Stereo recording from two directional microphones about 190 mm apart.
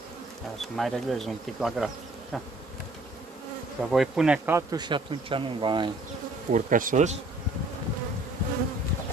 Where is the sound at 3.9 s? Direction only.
Centre (ahead or behind); by 5.9 s 25° right (ahead or behind).